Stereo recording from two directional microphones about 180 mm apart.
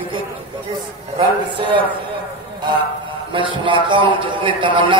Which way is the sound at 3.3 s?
25° right (ahead or behind).